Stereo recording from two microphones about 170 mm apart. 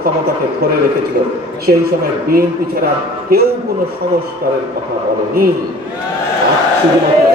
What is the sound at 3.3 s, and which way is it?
Speech, 65° right (ahead or behind).